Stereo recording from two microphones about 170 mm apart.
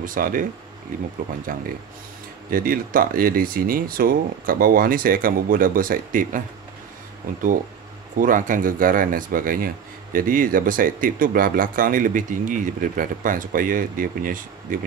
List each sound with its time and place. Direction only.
0.0 s speech: 55° right (ahead or behind)
1.5 s speech: 55° right (ahead or behind)
8.2 s speech: 50° right (ahead or behind)